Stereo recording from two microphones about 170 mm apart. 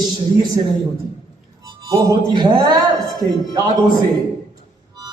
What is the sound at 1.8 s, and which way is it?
Speech, 30° right (ahead or behind).